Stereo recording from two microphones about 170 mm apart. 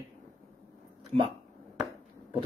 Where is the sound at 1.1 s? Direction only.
40° right (ahead or behind).